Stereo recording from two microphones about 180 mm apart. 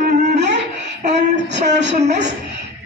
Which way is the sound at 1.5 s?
40° right (ahead or behind).